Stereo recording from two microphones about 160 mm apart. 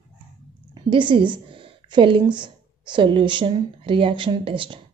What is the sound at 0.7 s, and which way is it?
A woman's voice, 30° right (ahead or behind).